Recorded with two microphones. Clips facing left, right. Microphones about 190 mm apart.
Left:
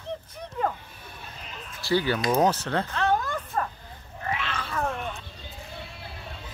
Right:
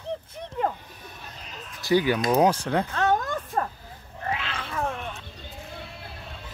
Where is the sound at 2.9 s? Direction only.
45° right (ahead or behind).